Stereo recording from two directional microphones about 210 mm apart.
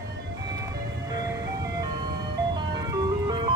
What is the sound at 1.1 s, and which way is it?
Vehicle, 15° right (ahead or behind).